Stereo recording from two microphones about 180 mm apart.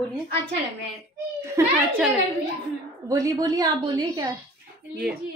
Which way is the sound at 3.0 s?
20° right (ahead or behind).